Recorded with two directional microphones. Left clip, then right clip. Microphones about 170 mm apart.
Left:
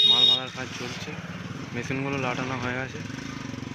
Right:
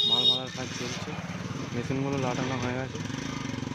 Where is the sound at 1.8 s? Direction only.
5° right (ahead or behind).